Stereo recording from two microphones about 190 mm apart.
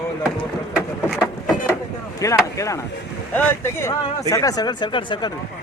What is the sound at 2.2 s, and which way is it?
Speech, 15° left (ahead or behind).